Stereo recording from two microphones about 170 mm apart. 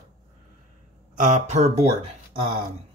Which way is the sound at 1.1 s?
40° right (ahead or behind).